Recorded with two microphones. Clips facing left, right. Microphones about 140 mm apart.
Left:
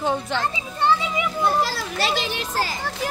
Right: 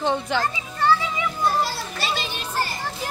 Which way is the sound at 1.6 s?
90° left.